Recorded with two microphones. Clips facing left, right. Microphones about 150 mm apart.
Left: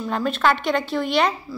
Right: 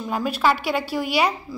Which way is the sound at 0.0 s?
10° right (ahead or behind).